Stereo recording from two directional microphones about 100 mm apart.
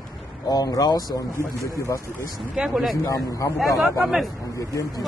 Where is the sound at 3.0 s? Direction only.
35° left (ahead or behind).